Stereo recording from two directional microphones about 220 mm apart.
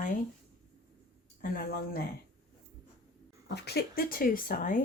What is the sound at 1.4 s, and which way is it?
Speech, 45° left (ahead or behind).